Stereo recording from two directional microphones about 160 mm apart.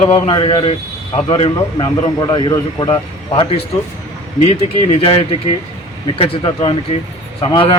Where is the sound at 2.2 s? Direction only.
25° left (ahead or behind).